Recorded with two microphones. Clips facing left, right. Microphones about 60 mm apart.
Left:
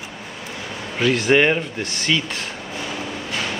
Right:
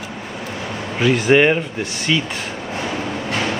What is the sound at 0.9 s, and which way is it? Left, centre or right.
Speech, centre.